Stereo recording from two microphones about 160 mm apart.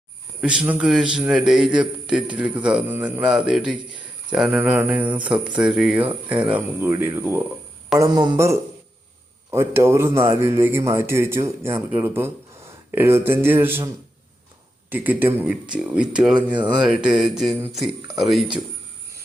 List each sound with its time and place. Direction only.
0.4 s a man's voice: 10° right (ahead or behind)
14.8 s a man's voice: 10° right (ahead or behind)